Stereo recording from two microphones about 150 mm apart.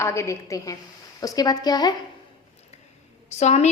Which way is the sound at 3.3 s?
50° left (ahead or behind).